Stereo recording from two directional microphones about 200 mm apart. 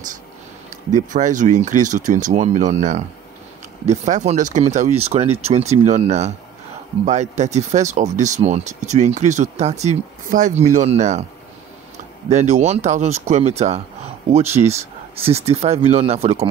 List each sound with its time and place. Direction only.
0.9 s speech: 40° right (ahead or behind)
12.3 s speech: 35° right (ahead or behind)